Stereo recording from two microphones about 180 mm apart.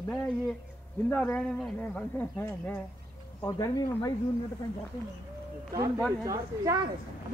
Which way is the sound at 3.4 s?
20° left (ahead or behind).